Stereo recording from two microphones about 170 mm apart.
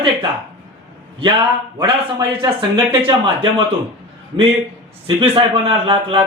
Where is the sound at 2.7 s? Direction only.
30° right (ahead or behind).